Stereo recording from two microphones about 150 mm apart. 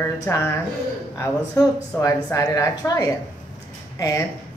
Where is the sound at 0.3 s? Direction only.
15° left (ahead or behind).